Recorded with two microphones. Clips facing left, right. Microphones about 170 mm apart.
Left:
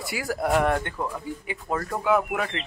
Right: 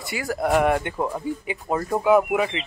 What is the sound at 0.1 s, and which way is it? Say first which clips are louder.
Speech: right 2 dB; 5° left (ahead or behind).